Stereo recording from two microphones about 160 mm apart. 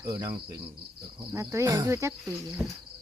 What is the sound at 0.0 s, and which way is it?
Speech, 20° right (ahead or behind).